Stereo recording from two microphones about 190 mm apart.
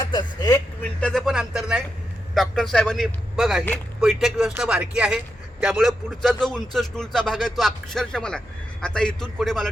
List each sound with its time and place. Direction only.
0.0 s speech: 25° left (ahead or behind)
0.8 s a man's voice: 5° left (ahead or behind)